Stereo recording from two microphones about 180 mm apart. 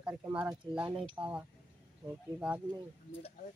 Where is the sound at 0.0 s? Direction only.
15° right (ahead or behind).